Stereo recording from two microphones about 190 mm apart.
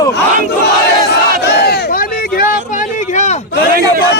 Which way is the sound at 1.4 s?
60° left (ahead or behind).